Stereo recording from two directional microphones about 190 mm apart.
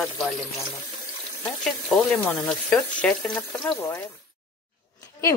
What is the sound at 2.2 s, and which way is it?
Speech, 10° left (ahead or behind).